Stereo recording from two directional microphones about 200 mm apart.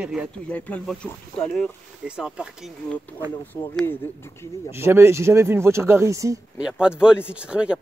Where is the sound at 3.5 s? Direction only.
15° left (ahead or behind).